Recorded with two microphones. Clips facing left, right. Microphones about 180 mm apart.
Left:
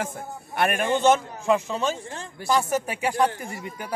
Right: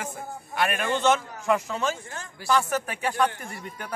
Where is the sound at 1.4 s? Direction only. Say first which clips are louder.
Left 2 dB; 30° left (ahead or behind).